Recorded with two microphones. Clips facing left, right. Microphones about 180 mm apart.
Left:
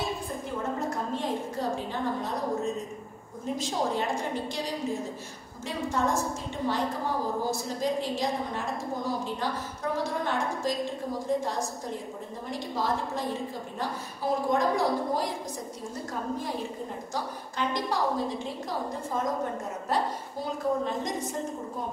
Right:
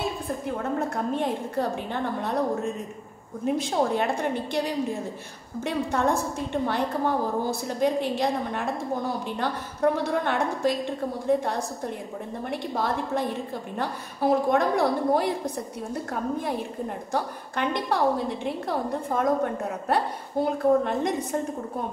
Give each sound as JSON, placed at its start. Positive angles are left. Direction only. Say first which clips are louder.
{"t": 0.7, "sound": "a woman's voice", "louder": "right 4 dB", "side_deg": -60}